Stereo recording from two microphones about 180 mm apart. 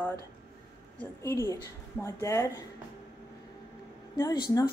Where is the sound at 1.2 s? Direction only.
15° left (ahead or behind).